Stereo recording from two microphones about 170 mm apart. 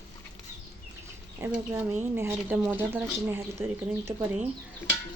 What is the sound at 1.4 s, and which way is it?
Speech, 15° right (ahead or behind).